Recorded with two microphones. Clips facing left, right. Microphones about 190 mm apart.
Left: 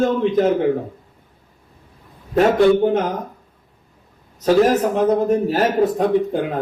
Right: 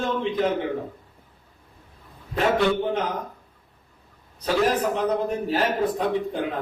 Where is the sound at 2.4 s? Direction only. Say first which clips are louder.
Left 8 dB; 45° left (ahead or behind).